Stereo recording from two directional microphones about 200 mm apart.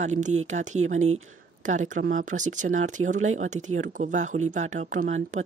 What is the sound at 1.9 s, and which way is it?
Speech, 40° right (ahead or behind).